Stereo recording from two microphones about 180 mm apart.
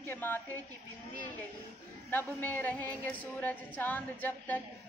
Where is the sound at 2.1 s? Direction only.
10° left (ahead or behind).